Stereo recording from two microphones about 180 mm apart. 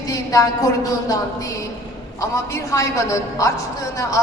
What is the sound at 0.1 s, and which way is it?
A woman's voice, 20° left (ahead or behind).